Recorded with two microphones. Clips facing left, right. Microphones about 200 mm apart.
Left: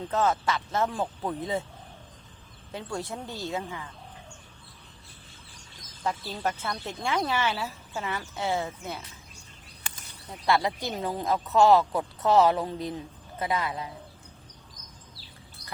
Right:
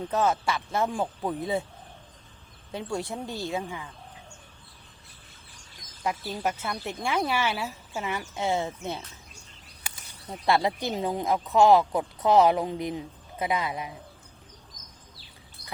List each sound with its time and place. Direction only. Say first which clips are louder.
0.1 s speech: even; 10° right (ahead or behind)
2.7 s speech: right 3 dB; 15° right (ahead or behind)
6.0 s speech: right 1 dB; 10° right (ahead or behind)
10.2 s speech: right 1 dB; 20° right (ahead or behind)